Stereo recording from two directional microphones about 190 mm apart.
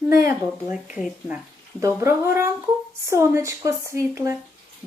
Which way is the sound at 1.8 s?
15° right (ahead or behind).